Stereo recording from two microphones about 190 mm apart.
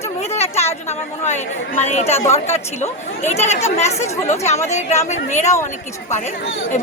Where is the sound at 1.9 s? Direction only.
35° left (ahead or behind).